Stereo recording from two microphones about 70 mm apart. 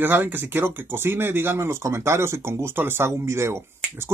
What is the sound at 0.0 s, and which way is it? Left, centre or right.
Speech, right.